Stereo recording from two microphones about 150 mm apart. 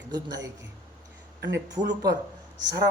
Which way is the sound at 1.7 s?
25° right (ahead or behind).